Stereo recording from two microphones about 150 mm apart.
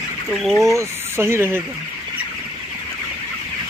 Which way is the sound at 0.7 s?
15° right (ahead or behind).